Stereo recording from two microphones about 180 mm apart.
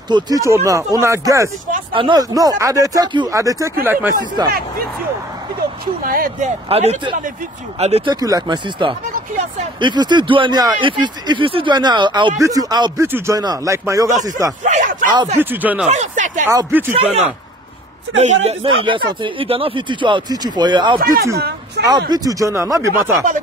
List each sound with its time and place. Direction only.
0.1 s speech: 20° right (ahead or behind)
6.0 s speech: 50° right (ahead or behind)
6.7 s speech: 35° right (ahead or behind); by 14.1 s 15° right (ahead or behind)
14.6 s a sound: 45° right (ahead or behind)
15.3 s speech: 10° right (ahead or behind)
15.9 s speech: 45° right (ahead or behind)
16.4 s speech: 15° right (ahead or behind)
16.9 s speech: 35° right (ahead or behind)
21.4 s speech: 60° right (ahead or behind)
22.1 s speech: 20° right (ahead or behind)